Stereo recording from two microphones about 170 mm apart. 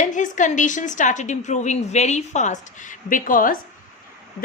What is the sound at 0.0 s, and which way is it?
A woman's voice, 45° left (ahead or behind).